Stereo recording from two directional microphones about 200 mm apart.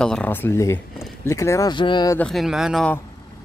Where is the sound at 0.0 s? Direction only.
5° left (ahead or behind); by 2.1 s 20° left (ahead or behind).